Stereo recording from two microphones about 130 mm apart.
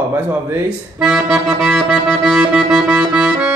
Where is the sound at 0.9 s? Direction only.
5° right (ahead or behind).